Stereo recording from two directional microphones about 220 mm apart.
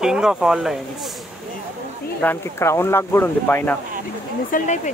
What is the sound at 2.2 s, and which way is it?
Speech, 10° left (ahead or behind).